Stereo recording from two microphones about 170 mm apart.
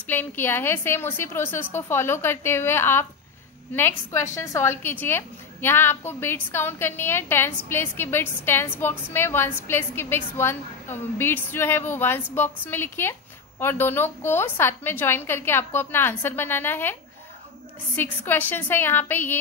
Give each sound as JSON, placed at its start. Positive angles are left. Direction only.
{"t": 0.0, "sound": "a woman's voice", "side_deg": 10}
{"t": 17.9, "sound": "a woman's voice", "side_deg": 10}